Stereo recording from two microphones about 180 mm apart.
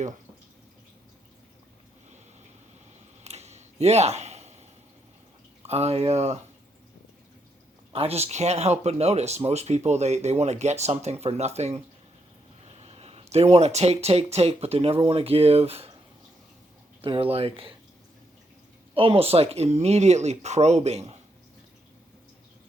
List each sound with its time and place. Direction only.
3.2 s a sound: 35° right (ahead or behind)
5.6 s speech: 35° right (ahead or behind)
7.9 s speech: 35° right (ahead or behind)
17.0 s speech: 30° right (ahead or behind)
18.9 s speech: 30° right (ahead or behind)